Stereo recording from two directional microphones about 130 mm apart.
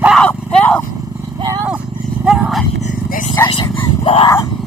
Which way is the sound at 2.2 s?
Centre (ahead or behind).